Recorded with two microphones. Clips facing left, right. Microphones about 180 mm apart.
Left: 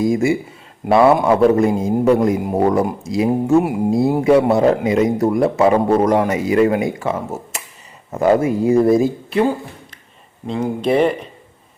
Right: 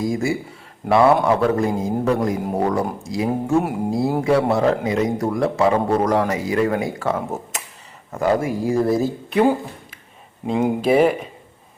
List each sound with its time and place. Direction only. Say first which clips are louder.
0.0 s a man's voice: left 5 dB; 20° left (ahead or behind)
3.2 s a man's voice: left 5 dB; 10° left (ahead or behind)
7.1 s speech: left 1 dB; 5° left (ahead or behind)
8.1 s a man's voice: left 5 dB; 20° left (ahead or behind)
9.3 s speech: even; 5° right (ahead or behind)